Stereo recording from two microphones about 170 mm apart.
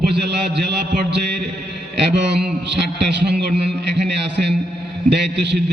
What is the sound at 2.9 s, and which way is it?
Speech, 80° right.